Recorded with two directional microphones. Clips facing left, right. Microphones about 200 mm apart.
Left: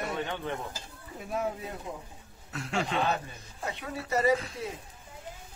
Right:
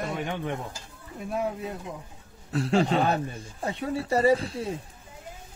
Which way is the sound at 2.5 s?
35° right (ahead or behind).